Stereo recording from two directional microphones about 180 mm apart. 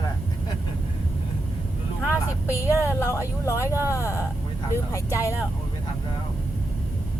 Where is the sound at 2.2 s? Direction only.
15° left (ahead or behind).